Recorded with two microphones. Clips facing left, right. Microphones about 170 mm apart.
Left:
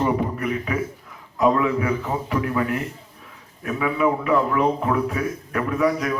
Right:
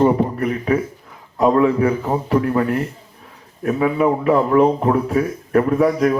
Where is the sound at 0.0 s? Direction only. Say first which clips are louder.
Right 6 dB; 40° right (ahead or behind).